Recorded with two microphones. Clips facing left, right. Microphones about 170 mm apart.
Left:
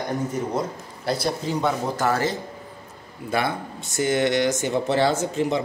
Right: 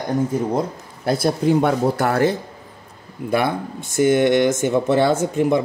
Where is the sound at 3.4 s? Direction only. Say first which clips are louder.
Right 4 dB; 55° right (ahead or behind).